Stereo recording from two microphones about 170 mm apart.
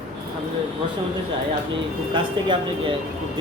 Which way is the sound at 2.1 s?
30° right (ahead or behind).